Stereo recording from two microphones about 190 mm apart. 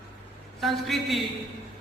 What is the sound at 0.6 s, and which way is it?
Speech, centre (ahead or behind).